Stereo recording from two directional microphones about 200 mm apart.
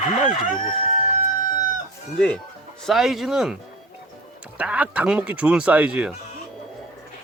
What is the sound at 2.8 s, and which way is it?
Speech, centre (ahead or behind).